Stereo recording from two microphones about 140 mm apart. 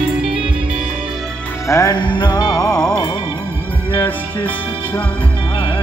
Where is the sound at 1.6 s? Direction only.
25° left (ahead or behind).